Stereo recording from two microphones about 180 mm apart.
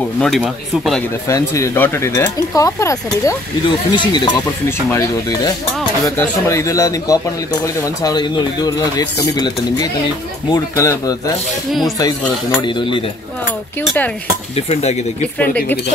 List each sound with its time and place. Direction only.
0.2 s speech: centre (ahead or behind)
1.3 s speech: 15° left (ahead or behind)
12.5 s speech: 25° left (ahead or behind)
13.8 s speech: 10° left (ahead or behind)
14.5 s cutlery: 35° left (ahead or behind)
15.3 s speech: 10° left (ahead or behind)